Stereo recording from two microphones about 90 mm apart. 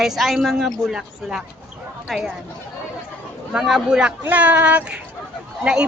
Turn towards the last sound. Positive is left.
turn(degrees=-10)  # may be behind; listen again after turning